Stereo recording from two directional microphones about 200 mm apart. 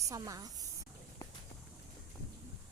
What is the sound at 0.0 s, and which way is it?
Speech, 15° right (ahead or behind).